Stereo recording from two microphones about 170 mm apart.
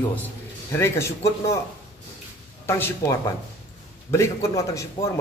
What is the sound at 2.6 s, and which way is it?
A man's voice, 15° left (ahead or behind).